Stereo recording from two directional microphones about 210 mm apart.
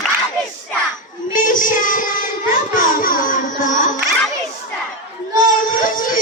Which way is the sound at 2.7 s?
40° left (ahead or behind).